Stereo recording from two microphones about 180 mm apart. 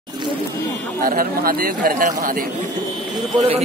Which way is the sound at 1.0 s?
50° right (ahead or behind).